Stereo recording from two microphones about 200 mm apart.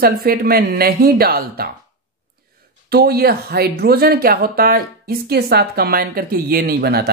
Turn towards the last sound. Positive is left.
turn(degrees=-50)  # may be behind; listen again after turning